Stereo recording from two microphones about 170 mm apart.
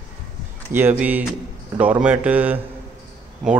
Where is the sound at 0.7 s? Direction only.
10° right (ahead or behind).